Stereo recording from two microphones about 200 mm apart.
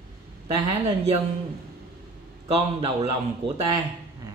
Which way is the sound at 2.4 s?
30° right (ahead or behind).